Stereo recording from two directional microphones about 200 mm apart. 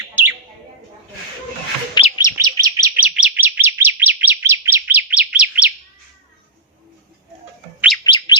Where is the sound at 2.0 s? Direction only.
20° left (ahead or behind).